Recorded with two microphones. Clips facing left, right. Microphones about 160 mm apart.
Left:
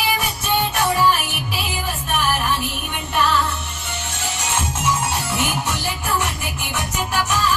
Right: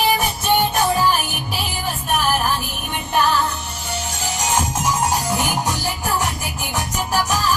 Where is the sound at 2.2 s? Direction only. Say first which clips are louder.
Right 1 dB; 40° right (ahead or behind).